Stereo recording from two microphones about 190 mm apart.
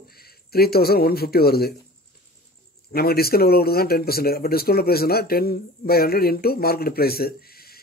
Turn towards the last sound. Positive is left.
turn(degrees=55)  # may be behind; listen again after turning